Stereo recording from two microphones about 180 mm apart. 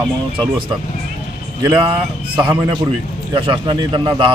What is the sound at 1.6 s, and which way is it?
A man's voice, 30° right (ahead or behind).